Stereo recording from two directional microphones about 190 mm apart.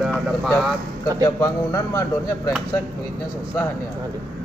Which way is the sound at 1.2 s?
15° left (ahead or behind).